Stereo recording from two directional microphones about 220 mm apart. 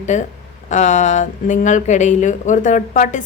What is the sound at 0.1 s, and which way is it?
Speech, 35° left (ahead or behind).